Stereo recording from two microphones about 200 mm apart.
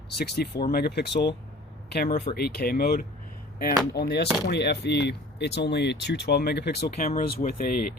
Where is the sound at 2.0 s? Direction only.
40° left (ahead or behind).